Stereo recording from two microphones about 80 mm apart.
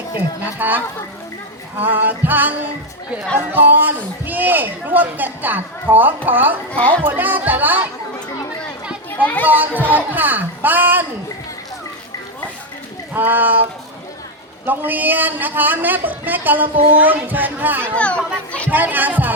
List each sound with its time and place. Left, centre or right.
0.4 s speech: right
6.7 s a child's voice: centre
7.0 s speech: right
9.0 s a child's voice: centre
9.5 s speech: right
13.1 s speech: right
14.7 s speech: right
17.9 s a child's voice: centre
18.7 s speech: right